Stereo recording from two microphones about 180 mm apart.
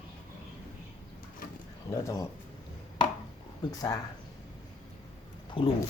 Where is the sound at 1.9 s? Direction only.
15° left (ahead or behind).